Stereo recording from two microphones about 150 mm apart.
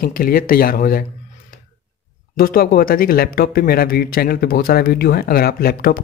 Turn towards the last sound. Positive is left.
turn(degrees=90)